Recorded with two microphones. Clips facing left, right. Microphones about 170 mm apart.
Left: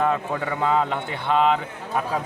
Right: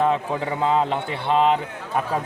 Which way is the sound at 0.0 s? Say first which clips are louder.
Right 2 dB; 25° right (ahead or behind).